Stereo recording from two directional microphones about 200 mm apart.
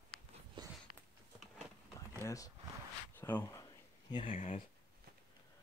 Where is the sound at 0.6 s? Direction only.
20° right (ahead or behind).